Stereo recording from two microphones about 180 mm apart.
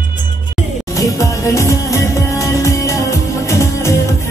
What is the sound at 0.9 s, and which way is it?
Music, 15° left (ahead or behind).